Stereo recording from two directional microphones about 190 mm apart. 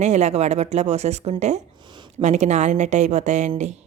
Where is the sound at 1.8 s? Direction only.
25° right (ahead or behind).